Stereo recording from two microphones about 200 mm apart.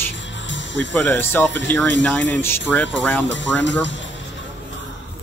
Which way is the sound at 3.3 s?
65° left (ahead or behind).